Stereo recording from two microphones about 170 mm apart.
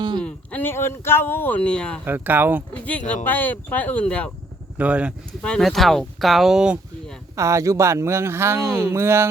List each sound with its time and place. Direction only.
0.2 s speech: 10° left (ahead or behind)
2.0 s speech: 10° right (ahead or behind)
3.2 s speech: 10° left (ahead or behind)
4.8 s speech: 5° right (ahead or behind)
5.4 s speech: 5° left (ahead or behind)
7.3 s speech: 20° right (ahead or behind)